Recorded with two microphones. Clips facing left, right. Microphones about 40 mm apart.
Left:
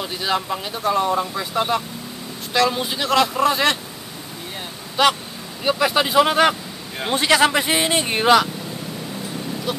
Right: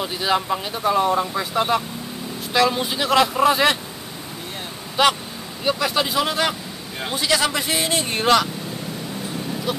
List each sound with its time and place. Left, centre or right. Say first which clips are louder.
0.0 s speech: right 1 dB; centre
5.0 s speech: even; centre
5.6 s speech: left 2 dB; centre
9.7 s speech: even; centre